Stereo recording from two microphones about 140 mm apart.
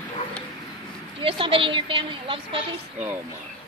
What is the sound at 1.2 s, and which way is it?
A woman's voice, 40° right (ahead or behind).